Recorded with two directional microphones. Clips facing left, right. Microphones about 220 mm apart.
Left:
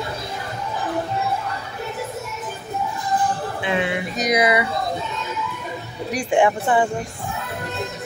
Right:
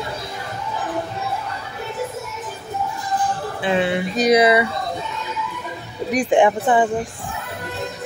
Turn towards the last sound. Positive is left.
turn(degrees=-20)  # may be behind; listen again after turning